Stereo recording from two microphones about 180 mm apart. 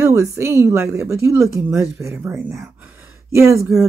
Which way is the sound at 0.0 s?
15° right (ahead or behind).